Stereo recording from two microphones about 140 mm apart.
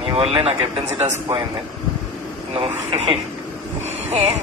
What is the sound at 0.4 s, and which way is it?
Speech, 40° right (ahead or behind).